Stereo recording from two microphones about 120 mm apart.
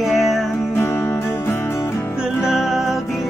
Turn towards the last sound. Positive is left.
turn(degrees=0)  # may be behind; listen again after turning